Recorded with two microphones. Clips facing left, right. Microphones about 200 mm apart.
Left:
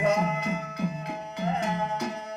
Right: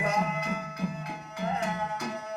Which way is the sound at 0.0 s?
20° left (ahead or behind).